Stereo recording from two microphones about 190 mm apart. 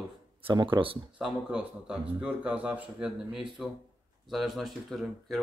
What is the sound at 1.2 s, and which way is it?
A man's voice, 5° right (ahead or behind).